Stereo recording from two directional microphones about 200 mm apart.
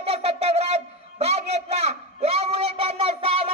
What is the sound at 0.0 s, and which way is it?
Wind instrument, 30° right (ahead or behind).